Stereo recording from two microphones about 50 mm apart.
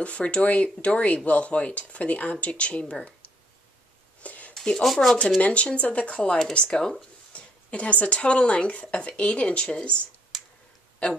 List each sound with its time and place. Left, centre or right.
0.0 s speech: left
4.2 s a sound: left
4.8 s speech: centre
5.4 s speech: left
7.3 s speech: left